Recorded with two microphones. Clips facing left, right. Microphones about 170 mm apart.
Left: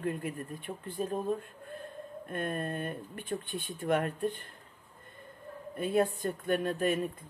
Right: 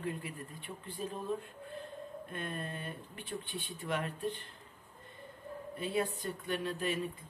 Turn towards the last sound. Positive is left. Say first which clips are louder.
# left 6 dB
turn(degrees=50)  # may be behind; listen again after turning